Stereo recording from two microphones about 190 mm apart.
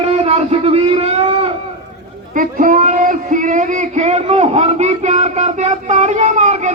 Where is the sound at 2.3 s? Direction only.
45° right (ahead or behind).